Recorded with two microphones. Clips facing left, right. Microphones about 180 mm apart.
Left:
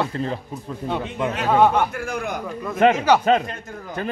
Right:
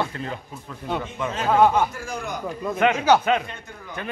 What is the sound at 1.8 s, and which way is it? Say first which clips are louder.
Speech: left 4 dB; 60° left (ahead or behind).